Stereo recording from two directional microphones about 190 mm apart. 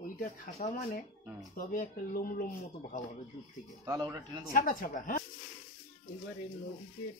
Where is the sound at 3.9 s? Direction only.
20° right (ahead or behind).